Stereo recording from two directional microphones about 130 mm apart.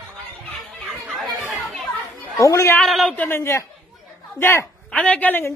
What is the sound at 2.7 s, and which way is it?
Speech, centre (ahead or behind).